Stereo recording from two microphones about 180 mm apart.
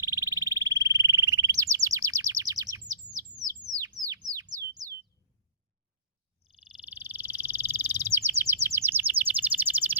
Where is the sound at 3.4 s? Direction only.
20° right (ahead or behind).